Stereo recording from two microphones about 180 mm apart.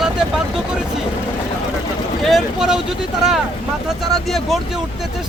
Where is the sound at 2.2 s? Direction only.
Centre (ahead or behind).